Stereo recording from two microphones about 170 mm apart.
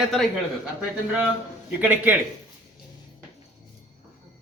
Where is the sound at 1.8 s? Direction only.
10° right (ahead or behind).